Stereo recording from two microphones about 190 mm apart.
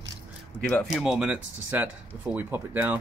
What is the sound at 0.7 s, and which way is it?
Speech, centre (ahead or behind).